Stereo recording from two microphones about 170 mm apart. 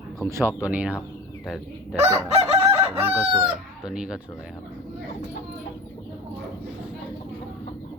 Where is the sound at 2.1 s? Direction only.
35° right (ahead or behind).